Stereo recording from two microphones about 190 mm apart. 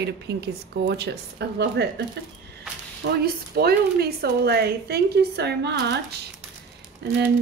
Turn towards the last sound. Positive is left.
turn(degrees=-60)  # may be behind; listen again after turning